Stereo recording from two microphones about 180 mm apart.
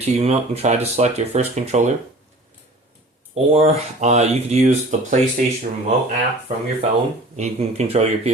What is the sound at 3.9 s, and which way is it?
Speech, 40° right (ahead or behind).